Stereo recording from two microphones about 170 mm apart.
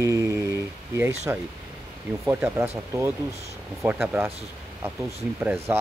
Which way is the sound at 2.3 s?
15° right (ahead or behind).